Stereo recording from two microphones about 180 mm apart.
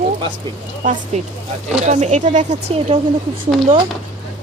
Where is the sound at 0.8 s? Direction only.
40° right (ahead or behind).